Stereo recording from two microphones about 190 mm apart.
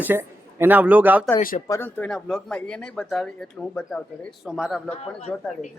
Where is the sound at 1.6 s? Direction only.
15° left (ahead or behind); by 4.8 s 5° right (ahead or behind).